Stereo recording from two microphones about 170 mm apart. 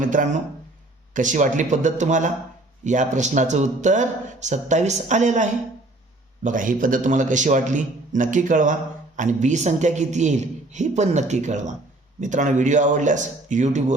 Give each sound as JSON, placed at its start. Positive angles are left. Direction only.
{"t": 0.0, "sound": "speech", "side_deg": -50}